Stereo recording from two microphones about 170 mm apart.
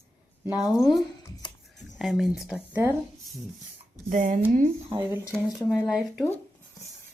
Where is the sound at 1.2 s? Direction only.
25° left (ahead or behind).